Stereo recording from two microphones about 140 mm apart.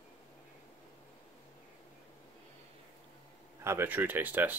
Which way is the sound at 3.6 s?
15° right (ahead or behind).